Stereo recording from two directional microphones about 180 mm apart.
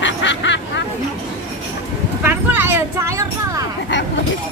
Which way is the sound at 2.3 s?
10° right (ahead or behind).